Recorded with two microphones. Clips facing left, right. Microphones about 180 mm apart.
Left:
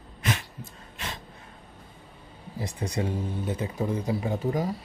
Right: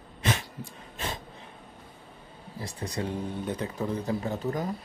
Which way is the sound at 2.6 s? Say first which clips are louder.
Left 3 dB; 10° left (ahead or behind).